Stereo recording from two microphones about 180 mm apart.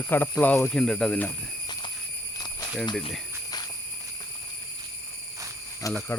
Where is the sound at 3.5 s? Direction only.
20° left (ahead or behind).